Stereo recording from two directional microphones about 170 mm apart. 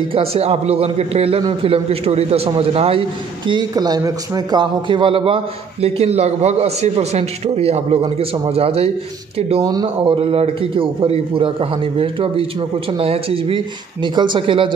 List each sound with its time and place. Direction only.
0.1 s a man's voice: 35° right (ahead or behind)
9.6 s a man's voice: 20° right (ahead or behind)